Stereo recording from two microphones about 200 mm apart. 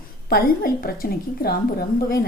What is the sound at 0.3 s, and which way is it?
Speech, 50° left (ahead or behind).